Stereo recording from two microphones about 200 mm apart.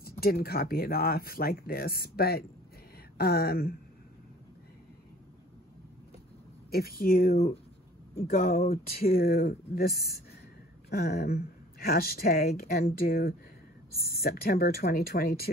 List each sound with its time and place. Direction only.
0.2 s speech: 50° left (ahead or behind)
6.7 s speech: 50° left (ahead or behind)